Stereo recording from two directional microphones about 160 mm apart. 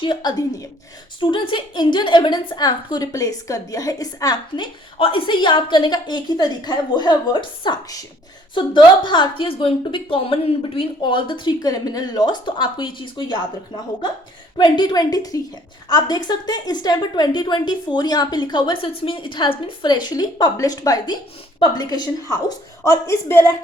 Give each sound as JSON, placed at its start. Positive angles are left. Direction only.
{"t": 0.0, "sound": "a woman's voice", "side_deg": 30}
{"t": 14.6, "sound": "a woman's voice", "side_deg": 25}